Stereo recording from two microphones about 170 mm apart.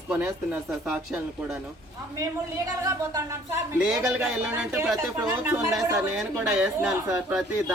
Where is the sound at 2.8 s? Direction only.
20° right (ahead or behind).